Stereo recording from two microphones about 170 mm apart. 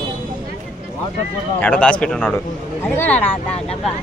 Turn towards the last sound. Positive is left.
turn(degrees=10)  # may be behind; listen again after turning